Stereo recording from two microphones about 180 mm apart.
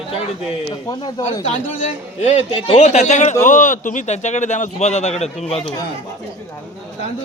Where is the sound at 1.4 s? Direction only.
40° left (ahead or behind).